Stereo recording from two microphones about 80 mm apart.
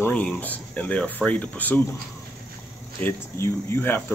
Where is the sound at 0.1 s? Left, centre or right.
Centre.